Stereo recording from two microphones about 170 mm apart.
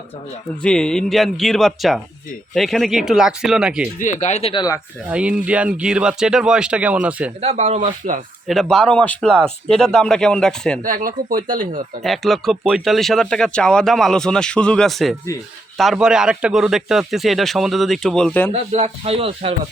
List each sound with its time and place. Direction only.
0.6 s speech: 5° left (ahead or behind)
4.0 s speech: 45° left (ahead or behind)
5.0 s speech: 5° right (ahead or behind)
7.4 s speech: 40° right (ahead or behind)
8.4 s speech: centre (ahead or behind)
10.8 s speech: 55° right (ahead or behind)
12.0 s speech: centre (ahead or behind)
18.5 s speech: 35° right (ahead or behind)